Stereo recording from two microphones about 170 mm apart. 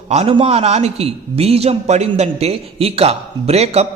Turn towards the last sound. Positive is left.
turn(degrees=-40)  # may be behind; listen again after turning